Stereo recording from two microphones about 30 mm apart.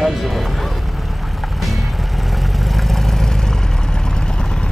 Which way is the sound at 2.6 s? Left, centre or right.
Centre.